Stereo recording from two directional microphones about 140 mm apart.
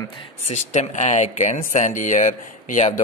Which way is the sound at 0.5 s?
60° left (ahead or behind).